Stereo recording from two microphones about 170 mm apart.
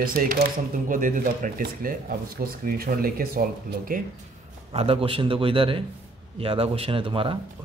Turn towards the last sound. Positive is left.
turn(degrees=-30)  # may be behind; listen again after turning